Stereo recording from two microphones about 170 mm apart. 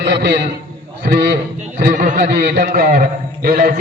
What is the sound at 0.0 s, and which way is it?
Speech, 85° right.